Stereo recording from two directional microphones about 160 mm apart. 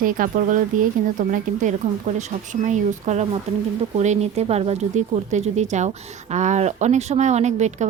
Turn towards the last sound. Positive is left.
turn(degrees=-45)  # may be behind; listen again after turning